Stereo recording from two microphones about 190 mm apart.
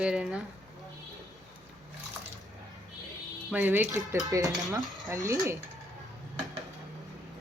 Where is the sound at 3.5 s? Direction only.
10° right (ahead or behind).